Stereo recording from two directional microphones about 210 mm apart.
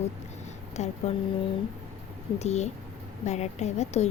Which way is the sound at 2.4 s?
30° left (ahead or behind).